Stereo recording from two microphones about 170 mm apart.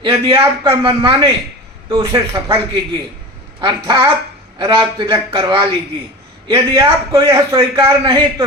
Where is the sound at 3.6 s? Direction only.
25° right (ahead or behind).